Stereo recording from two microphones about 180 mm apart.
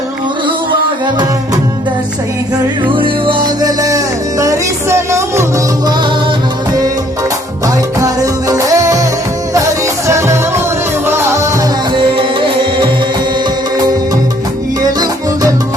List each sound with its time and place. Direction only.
2.8 s music: 30° right (ahead or behind)
7.9 s music: 20° right (ahead or behind)
10.1 s music: 15° right (ahead or behind)
11.9 s music: 30° right (ahead or behind)